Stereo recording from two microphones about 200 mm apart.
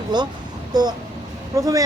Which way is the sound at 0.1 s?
20° right (ahead or behind).